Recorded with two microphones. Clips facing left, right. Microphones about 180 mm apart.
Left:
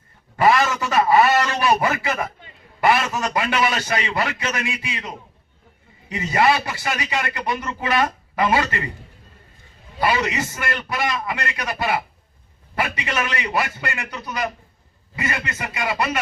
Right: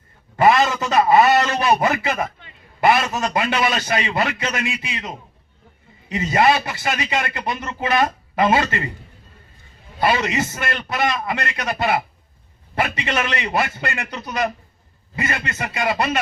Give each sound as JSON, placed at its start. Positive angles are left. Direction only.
{"t": 0.4, "sound": "a man's voice", "side_deg": -20}
{"t": 9.9, "sound": "a man's voice", "side_deg": -25}